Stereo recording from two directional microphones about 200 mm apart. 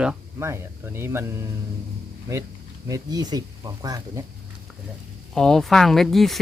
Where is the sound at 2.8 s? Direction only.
20° right (ahead or behind).